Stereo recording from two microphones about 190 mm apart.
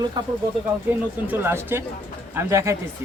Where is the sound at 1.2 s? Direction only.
10° right (ahead or behind).